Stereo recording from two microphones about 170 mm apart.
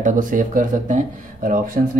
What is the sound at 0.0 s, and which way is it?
Speech, 50° right (ahead or behind).